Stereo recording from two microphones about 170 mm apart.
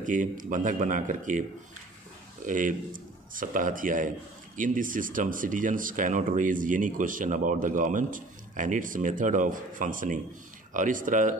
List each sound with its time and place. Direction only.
0.0 s speech: 50° right (ahead or behind)
2.4 s speech: 50° right (ahead or behind)